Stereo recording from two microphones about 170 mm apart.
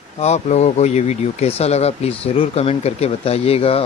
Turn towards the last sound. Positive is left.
turn(degrees=35)  # may be behind; listen again after turning